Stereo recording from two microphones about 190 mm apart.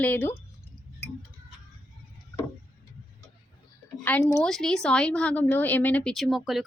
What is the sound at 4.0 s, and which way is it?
Speech, 10° left (ahead or behind).